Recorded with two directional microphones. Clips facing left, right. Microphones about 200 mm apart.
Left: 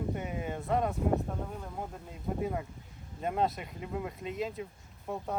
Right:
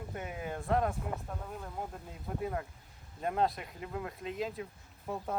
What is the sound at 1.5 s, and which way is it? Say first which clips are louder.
Speech: left 1 dB; centre (ahead or behind).